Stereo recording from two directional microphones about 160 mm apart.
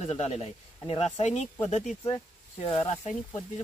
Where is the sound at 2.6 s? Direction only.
45° left (ahead or behind).